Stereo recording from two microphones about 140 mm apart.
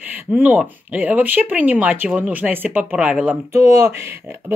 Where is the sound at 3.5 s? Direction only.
20° right (ahead or behind).